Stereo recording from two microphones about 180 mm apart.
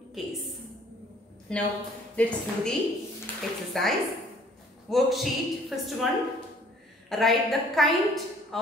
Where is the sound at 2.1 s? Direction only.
10° left (ahead or behind).